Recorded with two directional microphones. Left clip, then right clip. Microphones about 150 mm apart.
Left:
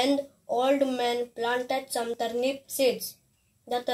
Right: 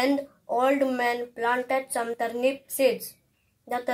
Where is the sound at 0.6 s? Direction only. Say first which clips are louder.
Right 1 dB; 20° left (ahead or behind).